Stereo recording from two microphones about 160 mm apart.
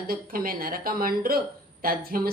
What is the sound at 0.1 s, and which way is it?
Speech, 65° right (ahead or behind).